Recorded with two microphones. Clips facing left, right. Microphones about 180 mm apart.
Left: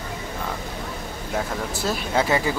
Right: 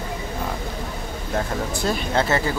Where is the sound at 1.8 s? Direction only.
10° left (ahead or behind).